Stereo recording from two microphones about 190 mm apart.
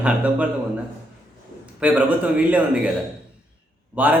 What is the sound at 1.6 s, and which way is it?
A man's voice, 5° right (ahead or behind).